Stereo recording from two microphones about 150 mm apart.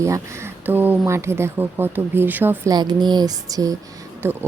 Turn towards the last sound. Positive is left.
turn(degrees=-15)  # may be behind; listen again after turning